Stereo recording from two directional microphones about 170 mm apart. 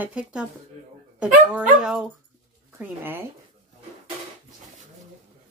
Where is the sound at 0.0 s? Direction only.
5° right (ahead or behind).